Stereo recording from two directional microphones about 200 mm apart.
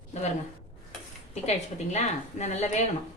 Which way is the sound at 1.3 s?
35° left (ahead or behind).